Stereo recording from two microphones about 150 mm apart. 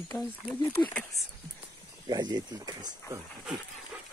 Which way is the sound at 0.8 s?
15° left (ahead or behind).